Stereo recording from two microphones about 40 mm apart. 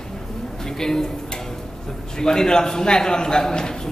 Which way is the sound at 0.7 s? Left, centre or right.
Centre.